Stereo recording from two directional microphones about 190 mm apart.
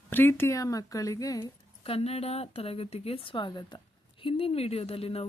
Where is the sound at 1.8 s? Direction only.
30° left (ahead or behind).